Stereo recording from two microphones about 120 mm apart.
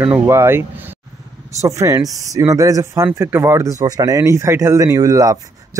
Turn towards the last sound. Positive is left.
turn(degrees=-30)  # may be behind; listen again after turning